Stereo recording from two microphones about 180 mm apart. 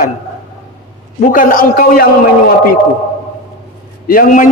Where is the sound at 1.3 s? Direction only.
50° left (ahead or behind).